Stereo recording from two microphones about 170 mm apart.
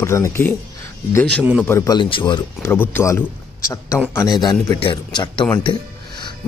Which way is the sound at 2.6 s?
10° left (ahead or behind).